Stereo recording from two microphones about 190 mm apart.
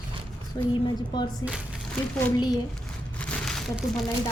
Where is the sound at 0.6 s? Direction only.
20° left (ahead or behind).